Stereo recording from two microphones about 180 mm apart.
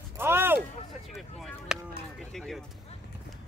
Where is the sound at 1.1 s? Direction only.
Centre (ahead or behind).